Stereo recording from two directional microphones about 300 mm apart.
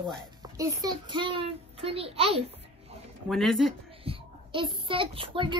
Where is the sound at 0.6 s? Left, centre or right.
Centre.